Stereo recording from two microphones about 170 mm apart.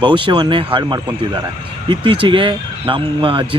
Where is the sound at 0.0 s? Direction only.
30° right (ahead or behind).